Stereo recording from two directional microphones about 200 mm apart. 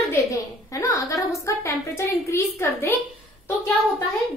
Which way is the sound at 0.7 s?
15° left (ahead or behind).